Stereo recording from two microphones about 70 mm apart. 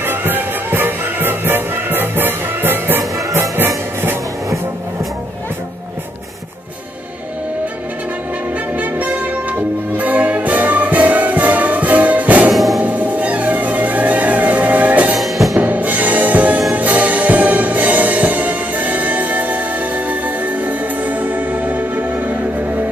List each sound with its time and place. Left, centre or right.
0.0 s music: right
8.7 s music: right
12.5 s music: centre
12.8 s music: right
15.1 s music: centre
15.5 s music: right